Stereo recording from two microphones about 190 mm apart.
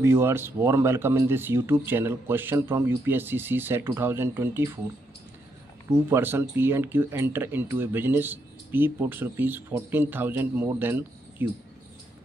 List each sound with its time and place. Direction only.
0.0 s speech: 10° right (ahead or behind)
5.9 s speech: 15° right (ahead or behind)